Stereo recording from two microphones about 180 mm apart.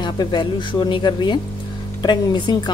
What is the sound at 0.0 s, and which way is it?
Speech, 25° left (ahead or behind).